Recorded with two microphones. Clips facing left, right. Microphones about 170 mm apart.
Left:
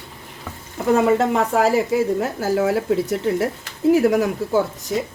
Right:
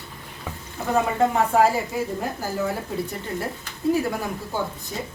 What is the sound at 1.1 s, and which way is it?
A woman's voice, 90° left.